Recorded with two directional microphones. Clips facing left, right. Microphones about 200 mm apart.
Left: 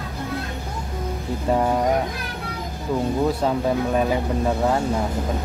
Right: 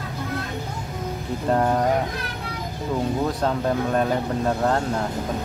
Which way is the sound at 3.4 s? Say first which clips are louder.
Left 1 dB; 10° left (ahead or behind).